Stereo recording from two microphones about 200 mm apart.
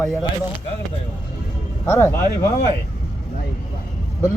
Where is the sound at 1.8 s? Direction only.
10° left (ahead or behind).